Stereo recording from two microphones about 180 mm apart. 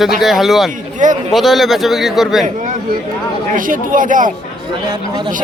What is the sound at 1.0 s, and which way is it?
Speech, 45° right (ahead or behind).